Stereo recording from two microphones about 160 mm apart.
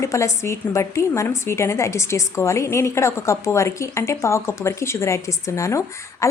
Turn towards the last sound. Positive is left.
turn(degrees=20)  # may be behind; listen again after turning